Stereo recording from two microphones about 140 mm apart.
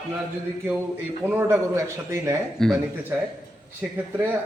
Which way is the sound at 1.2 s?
15° right (ahead or behind).